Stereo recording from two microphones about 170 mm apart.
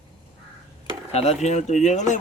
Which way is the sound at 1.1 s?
40° left (ahead or behind).